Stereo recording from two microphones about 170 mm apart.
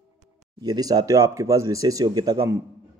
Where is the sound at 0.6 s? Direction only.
25° right (ahead or behind).